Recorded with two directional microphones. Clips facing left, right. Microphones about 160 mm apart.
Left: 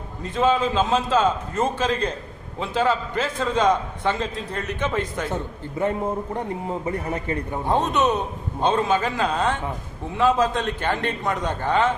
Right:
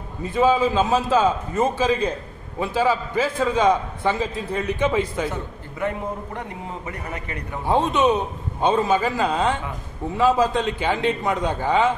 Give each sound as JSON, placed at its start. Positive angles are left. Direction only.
{"t": 0.2, "sound": "a man's voice", "side_deg": -10}
{"t": 5.8, "sound": "a man's voice", "side_deg": 30}
{"t": 7.6, "sound": "a man's voice", "side_deg": -10}